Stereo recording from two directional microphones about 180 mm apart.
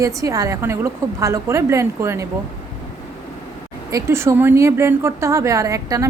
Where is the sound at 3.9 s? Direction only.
15° right (ahead or behind).